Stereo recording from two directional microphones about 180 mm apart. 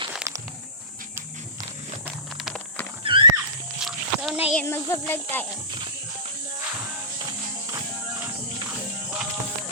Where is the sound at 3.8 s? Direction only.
5° right (ahead or behind).